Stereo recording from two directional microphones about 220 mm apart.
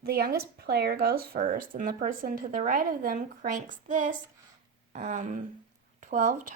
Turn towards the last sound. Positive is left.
turn(degrees=-35)  # may be behind; listen again after turning